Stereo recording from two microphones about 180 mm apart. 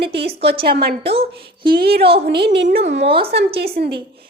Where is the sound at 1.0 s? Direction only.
30° right (ahead or behind).